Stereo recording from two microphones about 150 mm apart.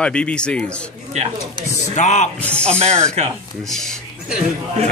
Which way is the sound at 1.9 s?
50° left (ahead or behind).